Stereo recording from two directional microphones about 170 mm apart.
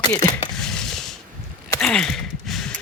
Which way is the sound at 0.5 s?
5° left (ahead or behind).